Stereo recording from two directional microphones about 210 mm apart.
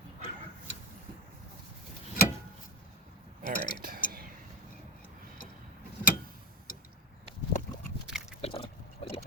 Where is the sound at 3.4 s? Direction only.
40° right (ahead or behind).